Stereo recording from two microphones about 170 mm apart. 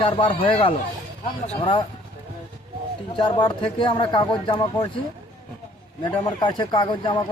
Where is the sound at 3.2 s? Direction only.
30° left (ahead or behind).